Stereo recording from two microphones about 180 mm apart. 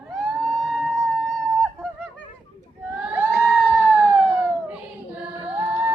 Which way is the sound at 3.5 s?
5° right (ahead or behind).